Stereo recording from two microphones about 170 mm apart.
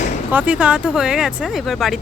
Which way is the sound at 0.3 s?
10° right (ahead or behind).